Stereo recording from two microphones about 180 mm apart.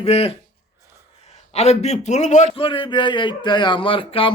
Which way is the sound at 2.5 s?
30° left (ahead or behind).